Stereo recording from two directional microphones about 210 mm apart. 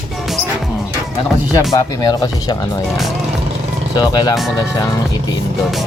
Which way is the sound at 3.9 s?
20° left (ahead or behind).